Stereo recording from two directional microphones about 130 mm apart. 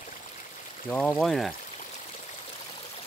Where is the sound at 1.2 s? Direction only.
Centre (ahead or behind).